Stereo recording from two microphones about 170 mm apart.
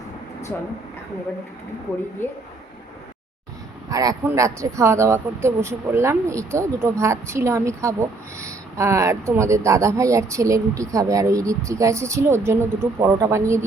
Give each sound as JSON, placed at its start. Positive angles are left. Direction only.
{"t": 3.8, "sound": "speech", "side_deg": -20}